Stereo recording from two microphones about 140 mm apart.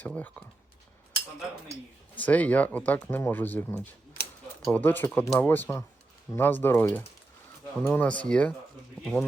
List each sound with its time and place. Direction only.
0.0 s speech: 10° left (ahead or behind)
2.1 s speech: 10° left (ahead or behind)